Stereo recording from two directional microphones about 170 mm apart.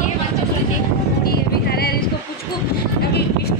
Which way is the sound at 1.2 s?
65° left (ahead or behind).